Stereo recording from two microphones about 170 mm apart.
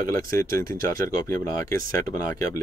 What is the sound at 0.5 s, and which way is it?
Speech, 15° left (ahead or behind).